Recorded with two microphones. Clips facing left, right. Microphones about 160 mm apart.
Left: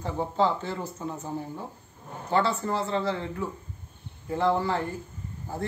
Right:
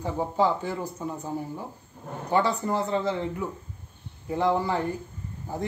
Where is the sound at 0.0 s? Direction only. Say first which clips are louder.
Right 1 dB; 10° right (ahead or behind).